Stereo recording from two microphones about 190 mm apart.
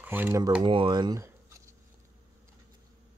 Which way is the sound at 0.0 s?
10° right (ahead or behind).